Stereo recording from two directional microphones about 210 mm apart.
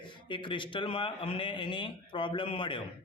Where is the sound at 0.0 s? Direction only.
20° left (ahead or behind).